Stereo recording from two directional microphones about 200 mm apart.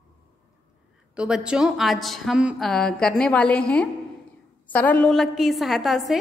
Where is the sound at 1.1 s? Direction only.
5° right (ahead or behind).